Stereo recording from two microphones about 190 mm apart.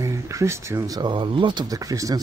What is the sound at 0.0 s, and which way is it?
Speech, 15° right (ahead or behind).